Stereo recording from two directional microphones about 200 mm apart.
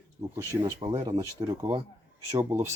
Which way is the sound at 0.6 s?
20° right (ahead or behind).